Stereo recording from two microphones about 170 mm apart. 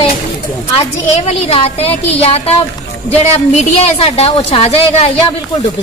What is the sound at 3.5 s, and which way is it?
A woman's voice, 35° left (ahead or behind).